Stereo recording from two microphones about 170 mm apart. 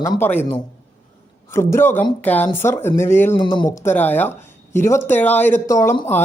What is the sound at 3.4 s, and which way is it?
Speech, 25° left (ahead or behind).